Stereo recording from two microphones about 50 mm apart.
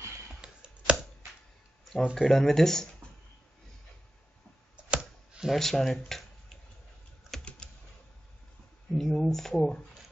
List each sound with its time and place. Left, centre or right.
0.4 s computer keyboard: centre
2.1 s speech: centre
4.9 s a sound: centre
5.5 s speech: centre
7.6 s typing: left
8.9 s speech: centre